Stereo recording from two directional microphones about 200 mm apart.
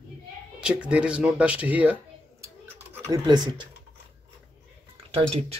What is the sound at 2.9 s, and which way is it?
Speech, 15° right (ahead or behind).